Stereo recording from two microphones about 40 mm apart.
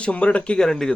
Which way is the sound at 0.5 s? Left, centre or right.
Centre.